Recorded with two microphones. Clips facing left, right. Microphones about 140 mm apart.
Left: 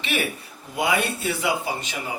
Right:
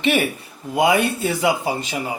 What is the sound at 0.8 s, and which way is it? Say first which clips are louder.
Speech: right 5 dB; 40° right (ahead or behind).